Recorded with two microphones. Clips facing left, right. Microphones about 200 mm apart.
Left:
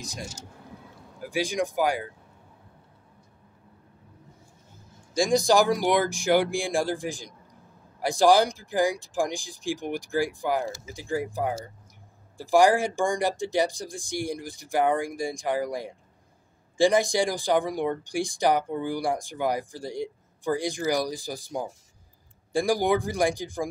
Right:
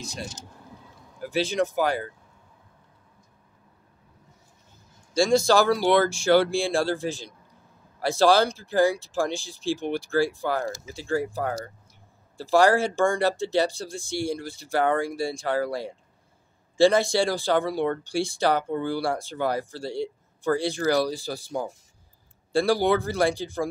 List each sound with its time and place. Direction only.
0.0 s speech: 15° left (ahead or behind)
5.1 s speech: 15° left (ahead or behind)
12.4 s speech: 15° left (ahead or behind)